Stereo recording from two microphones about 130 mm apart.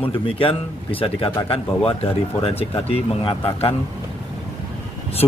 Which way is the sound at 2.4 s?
50° left (ahead or behind).